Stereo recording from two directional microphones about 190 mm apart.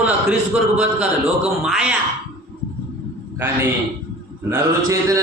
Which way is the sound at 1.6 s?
Centre (ahead or behind).